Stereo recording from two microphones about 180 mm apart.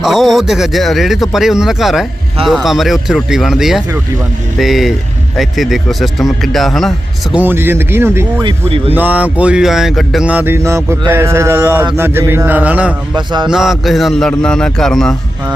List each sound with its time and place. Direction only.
0.0 s speech: centre (ahead or behind)
7.3 s speech: 10° right (ahead or behind)
8.4 s speech: 30° right (ahead or behind)
9.0 s speech: 10° right (ahead or behind)
13.1 s a man's voice: 25° right (ahead or behind)
13.5 s speech: centre (ahead or behind)